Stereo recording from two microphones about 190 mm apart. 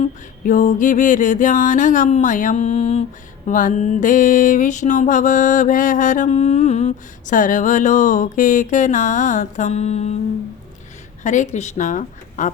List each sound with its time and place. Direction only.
0.0 s mantra: 40° left (ahead or behind)
11.2 s mantra: 40° left (ahead or behind)